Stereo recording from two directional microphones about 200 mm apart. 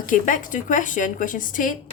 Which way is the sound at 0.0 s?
40° left (ahead or behind).